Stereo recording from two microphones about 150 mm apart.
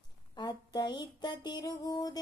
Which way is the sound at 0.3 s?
25° left (ahead or behind).